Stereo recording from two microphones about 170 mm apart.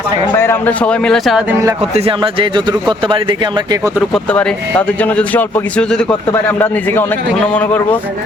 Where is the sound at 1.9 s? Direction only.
35° right (ahead or behind).